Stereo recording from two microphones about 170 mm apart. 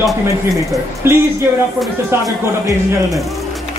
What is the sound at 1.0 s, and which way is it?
A woman's voice, 15° right (ahead or behind).